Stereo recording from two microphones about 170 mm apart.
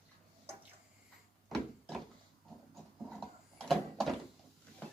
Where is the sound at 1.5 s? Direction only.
Centre (ahead or behind).